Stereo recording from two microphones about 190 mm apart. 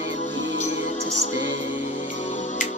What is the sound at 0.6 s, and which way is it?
Music, 40° left (ahead or behind).